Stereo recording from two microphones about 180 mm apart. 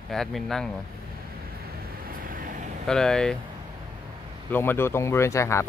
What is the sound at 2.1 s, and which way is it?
Vehicle, 50° right (ahead or behind).